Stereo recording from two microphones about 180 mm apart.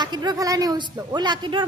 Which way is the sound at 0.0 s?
25° right (ahead or behind).